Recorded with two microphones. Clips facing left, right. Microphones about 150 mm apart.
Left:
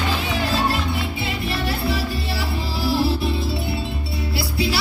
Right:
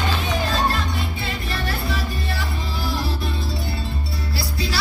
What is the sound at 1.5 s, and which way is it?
Music, 30° left (ahead or behind).